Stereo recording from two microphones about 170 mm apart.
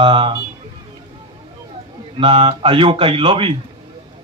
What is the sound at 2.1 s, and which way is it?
Speech, 30° right (ahead or behind).